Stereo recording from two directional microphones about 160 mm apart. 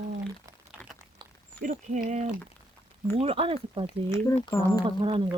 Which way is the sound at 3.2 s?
35° right (ahead or behind).